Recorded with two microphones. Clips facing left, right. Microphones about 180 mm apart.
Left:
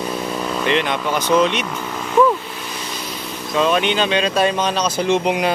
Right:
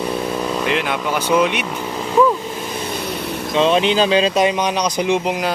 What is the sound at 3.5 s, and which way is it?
Speech, 30° right (ahead or behind).